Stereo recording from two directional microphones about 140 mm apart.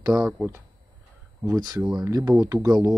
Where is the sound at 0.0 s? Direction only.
25° right (ahead or behind).